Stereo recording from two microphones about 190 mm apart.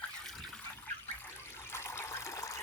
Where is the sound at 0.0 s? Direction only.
Centre (ahead or behind).